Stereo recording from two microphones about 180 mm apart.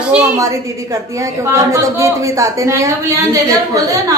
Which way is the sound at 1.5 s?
15° right (ahead or behind).